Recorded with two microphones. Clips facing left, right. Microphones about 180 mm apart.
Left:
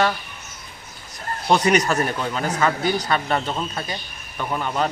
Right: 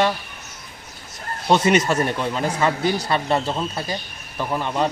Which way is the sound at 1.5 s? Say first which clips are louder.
Right 1 dB; 25° right (ahead or behind).